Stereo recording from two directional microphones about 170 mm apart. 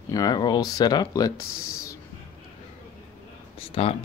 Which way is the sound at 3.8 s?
35° left (ahead or behind).